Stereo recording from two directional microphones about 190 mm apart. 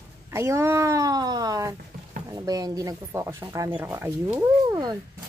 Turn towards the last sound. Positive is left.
turn(degrees=-20)  # may be behind; listen again after turning